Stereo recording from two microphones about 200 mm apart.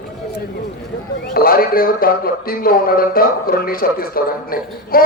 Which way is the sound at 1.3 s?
50° left (ahead or behind).